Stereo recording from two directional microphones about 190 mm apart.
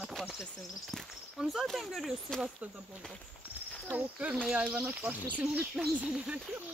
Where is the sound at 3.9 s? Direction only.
5° right (ahead or behind).